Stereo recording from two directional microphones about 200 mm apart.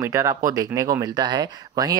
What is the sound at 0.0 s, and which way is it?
Speech, 15° right (ahead or behind).